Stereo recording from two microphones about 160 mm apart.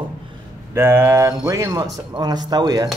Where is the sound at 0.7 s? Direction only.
15° right (ahead or behind).